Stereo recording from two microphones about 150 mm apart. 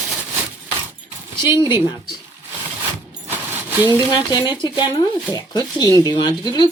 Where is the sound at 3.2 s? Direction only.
15° right (ahead or behind).